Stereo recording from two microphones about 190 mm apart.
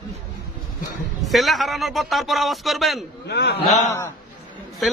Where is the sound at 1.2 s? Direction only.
Centre (ahead or behind).